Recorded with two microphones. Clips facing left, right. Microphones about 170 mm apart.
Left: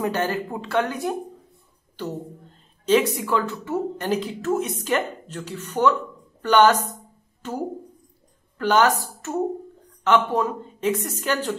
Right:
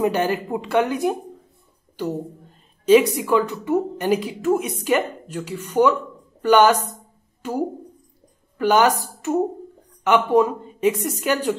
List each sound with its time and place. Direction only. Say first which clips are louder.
0.0 s a woman's voice: right 4 dB; 15° right (ahead or behind)